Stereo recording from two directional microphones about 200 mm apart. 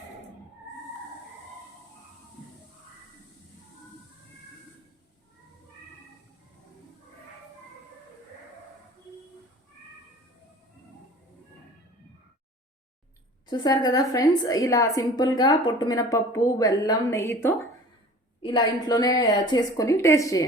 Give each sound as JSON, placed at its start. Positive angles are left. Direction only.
{"t": 13.5, "sound": "a woman's voice", "side_deg": 20}